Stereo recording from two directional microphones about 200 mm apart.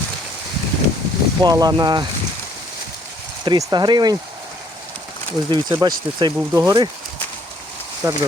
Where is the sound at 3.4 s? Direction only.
20° right (ahead or behind).